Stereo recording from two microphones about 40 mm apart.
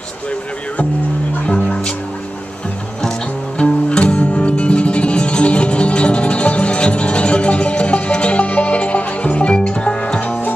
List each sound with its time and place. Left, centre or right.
3.5 s music: left